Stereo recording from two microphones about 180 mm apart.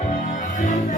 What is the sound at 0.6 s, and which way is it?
Music, 45° left (ahead or behind).